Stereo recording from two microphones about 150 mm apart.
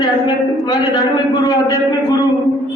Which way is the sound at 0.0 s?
30° left (ahead or behind).